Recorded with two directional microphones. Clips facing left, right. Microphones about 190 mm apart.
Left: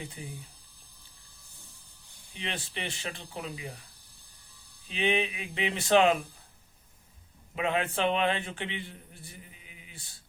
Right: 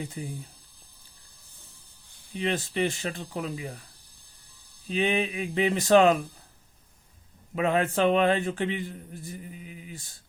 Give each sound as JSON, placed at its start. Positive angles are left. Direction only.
{"t": 0.2, "sound": "speech", "side_deg": -40}
{"t": 2.4, "sound": "a man's voice", "side_deg": -45}
{"t": 4.9, "sound": "speech", "side_deg": -40}
{"t": 7.5, "sound": "a man's voice", "side_deg": -40}